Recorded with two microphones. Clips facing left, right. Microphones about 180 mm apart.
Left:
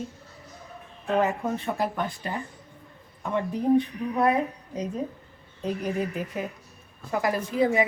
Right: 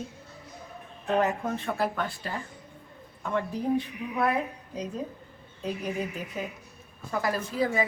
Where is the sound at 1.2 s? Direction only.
10° left (ahead or behind).